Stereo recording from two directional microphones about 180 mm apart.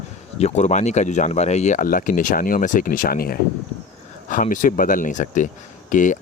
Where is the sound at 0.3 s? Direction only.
40° left (ahead or behind).